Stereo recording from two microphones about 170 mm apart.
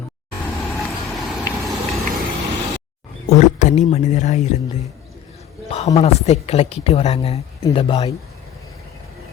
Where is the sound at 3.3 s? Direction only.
45° left (ahead or behind).